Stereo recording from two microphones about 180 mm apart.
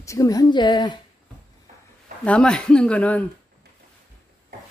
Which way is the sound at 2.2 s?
5° left (ahead or behind).